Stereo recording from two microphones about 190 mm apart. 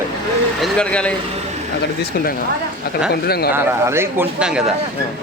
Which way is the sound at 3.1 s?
55° left (ahead or behind).